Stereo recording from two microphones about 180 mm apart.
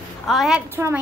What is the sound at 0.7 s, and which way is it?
Speech, 10° right (ahead or behind).